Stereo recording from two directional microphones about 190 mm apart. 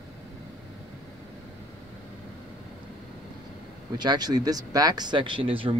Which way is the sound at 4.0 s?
20° right (ahead or behind).